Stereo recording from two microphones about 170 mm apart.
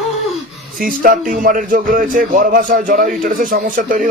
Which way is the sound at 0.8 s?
55° right (ahead or behind).